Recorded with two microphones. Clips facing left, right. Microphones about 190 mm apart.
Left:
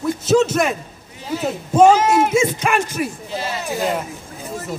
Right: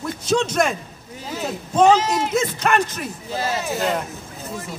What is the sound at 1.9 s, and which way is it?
Speech, 50° left (ahead or behind).